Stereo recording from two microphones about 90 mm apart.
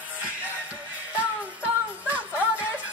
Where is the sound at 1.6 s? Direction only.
15° right (ahead or behind).